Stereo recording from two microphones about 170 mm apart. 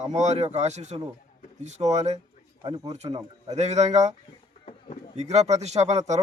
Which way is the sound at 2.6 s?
30° right (ahead or behind).